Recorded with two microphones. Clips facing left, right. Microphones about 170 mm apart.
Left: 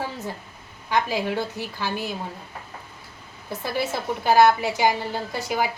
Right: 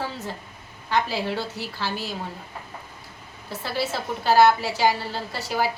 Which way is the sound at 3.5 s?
15° left (ahead or behind).